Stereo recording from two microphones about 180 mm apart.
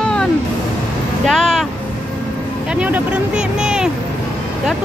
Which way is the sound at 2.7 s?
10° right (ahead or behind).